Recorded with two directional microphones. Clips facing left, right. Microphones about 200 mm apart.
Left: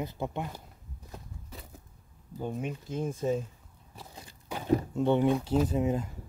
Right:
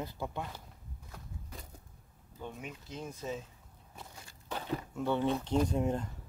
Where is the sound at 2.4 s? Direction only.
40° left (ahead or behind).